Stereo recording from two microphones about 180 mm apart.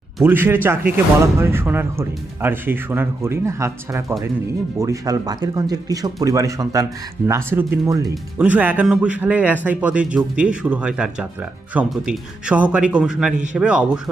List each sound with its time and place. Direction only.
0.2 s a man's voice: 10° right (ahead or behind)